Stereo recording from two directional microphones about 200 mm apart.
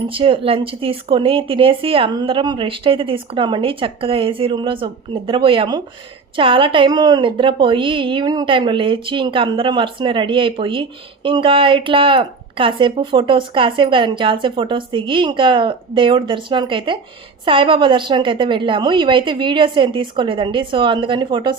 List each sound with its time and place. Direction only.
0.1 s a woman's voice: 25° right (ahead or behind)